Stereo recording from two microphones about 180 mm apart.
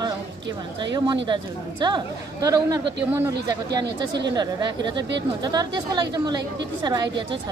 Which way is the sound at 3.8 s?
75° right (ahead or behind).